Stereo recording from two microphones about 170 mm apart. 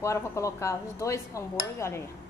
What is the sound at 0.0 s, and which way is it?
A woman's voice, 20° left (ahead or behind).